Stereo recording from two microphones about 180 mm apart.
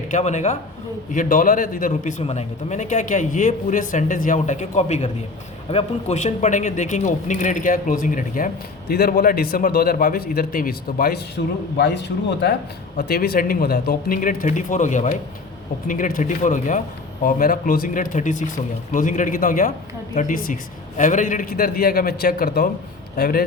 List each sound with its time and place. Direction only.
0.1 s a man's voice: 40° left (ahead or behind)
8.9 s a man's voice: 60° left (ahead or behind)
11.4 s a man's voice: 65° left (ahead or behind)